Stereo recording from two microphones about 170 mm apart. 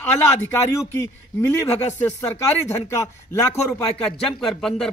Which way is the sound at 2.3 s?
15° left (ahead or behind).